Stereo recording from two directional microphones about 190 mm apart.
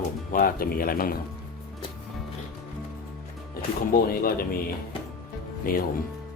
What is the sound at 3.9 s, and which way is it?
Speech, 50° left (ahead or behind).